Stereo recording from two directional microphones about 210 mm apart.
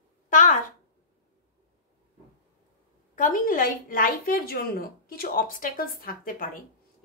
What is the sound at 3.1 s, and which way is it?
A woman's voice, 40° left (ahead or behind).